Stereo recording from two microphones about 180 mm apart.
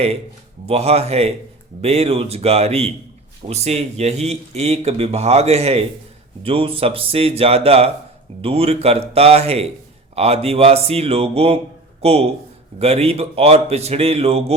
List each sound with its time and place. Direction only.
0.6 s speech: 35° right (ahead or behind)